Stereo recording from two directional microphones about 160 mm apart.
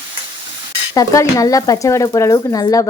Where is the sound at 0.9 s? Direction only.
20° left (ahead or behind).